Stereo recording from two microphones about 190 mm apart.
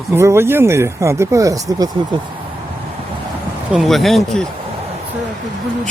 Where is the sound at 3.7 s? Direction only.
Centre (ahead or behind).